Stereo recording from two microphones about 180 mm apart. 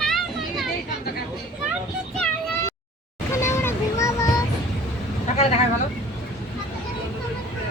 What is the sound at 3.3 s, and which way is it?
Boat, 15° left (ahead or behind).